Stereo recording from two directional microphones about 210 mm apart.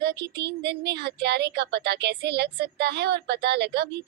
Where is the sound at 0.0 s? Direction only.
55° right (ahead or behind).